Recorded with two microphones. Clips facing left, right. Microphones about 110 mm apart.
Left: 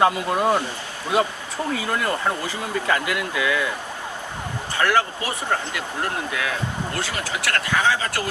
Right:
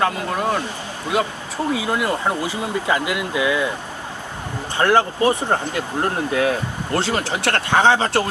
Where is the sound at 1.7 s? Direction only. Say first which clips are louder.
Right 3 dB; 15° right (ahead or behind).